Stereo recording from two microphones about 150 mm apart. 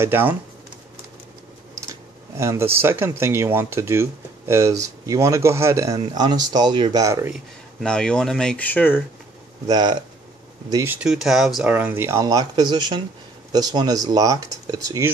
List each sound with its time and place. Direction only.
0.0 s speech: 15° right (ahead or behind)
1.9 s speech: 20° right (ahead or behind)
7.3 s speech: 5° left (ahead or behind)
9.7 s speech: 30° right (ahead or behind)
11.0 s speech: 5° right (ahead or behind)
11.7 s speech: 15° right (ahead or behind)